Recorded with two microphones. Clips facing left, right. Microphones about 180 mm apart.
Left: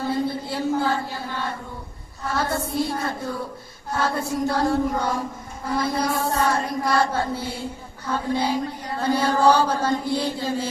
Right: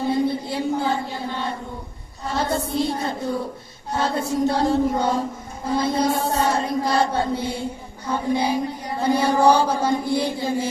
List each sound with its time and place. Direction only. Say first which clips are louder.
0.0 s a sound: right 3 dB; 20° right (ahead or behind)
3.9 s child singing: right 2 dB; 20° right (ahead or behind)
5.6 s chant: right 3 dB; 25° right (ahead or behind)